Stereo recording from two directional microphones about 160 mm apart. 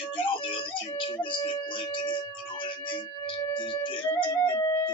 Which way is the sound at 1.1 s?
30° left (ahead or behind).